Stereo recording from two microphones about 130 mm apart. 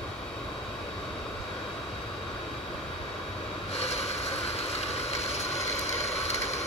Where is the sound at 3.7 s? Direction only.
55° left (ahead or behind).